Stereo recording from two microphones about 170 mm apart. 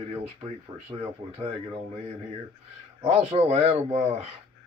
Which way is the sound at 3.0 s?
40° right (ahead or behind).